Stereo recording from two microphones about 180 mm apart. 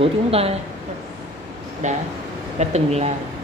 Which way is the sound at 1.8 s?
40° right (ahead or behind).